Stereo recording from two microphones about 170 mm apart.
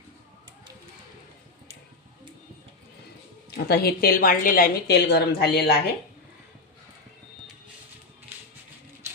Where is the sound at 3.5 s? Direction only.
70° left (ahead or behind).